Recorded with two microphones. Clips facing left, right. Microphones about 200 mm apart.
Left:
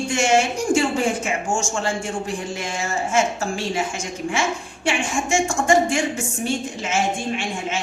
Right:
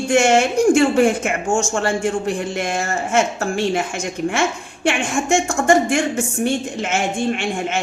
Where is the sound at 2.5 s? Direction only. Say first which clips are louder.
Right 4 dB; 60° right (ahead or behind).